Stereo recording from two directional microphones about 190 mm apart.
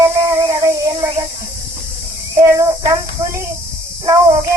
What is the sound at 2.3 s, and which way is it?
Child singing, 15° right (ahead or behind).